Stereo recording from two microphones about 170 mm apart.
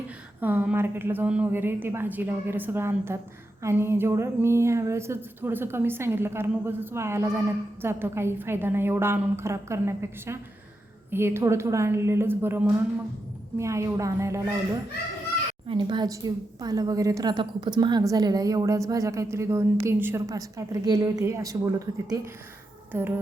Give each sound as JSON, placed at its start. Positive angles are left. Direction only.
{"t": 0.3, "sound": "speech", "side_deg": -10}
{"t": 15.6, "sound": "a woman's voice", "side_deg": -30}